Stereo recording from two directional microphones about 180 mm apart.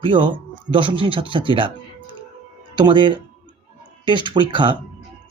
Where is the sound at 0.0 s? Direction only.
30° right (ahead or behind).